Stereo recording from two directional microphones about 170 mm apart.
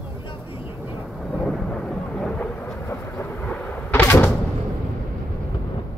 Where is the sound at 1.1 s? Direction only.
Centre (ahead or behind).